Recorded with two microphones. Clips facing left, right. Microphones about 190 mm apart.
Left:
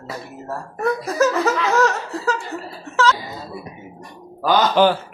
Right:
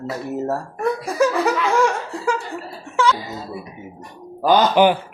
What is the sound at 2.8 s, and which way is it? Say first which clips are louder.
Music: even; 15° right (ahead or behind).